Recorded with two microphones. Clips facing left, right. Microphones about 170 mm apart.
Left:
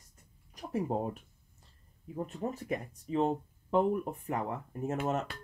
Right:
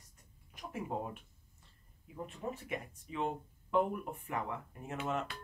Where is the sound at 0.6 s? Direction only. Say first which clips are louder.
Left 7 dB; 35° left (ahead or behind).